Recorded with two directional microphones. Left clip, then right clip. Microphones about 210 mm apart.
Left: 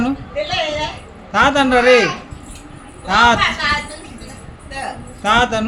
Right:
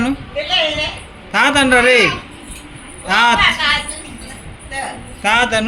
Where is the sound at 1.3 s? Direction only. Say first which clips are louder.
Right 1 dB; 15° left (ahead or behind).